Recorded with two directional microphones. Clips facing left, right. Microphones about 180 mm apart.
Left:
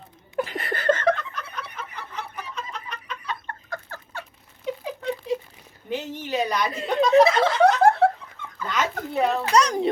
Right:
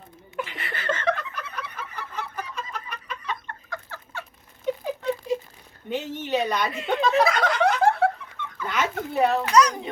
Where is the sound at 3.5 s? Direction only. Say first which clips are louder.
Left 2 dB; 40° left (ahead or behind).